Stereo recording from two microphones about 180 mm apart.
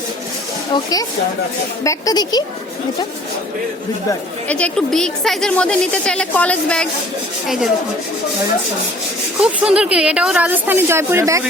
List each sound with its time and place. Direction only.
0.7 s a woman's voice: 20° left (ahead or behind)
4.4 s a woman's voice: 5° left (ahead or behind)
9.4 s a woman's voice: 5° right (ahead or behind)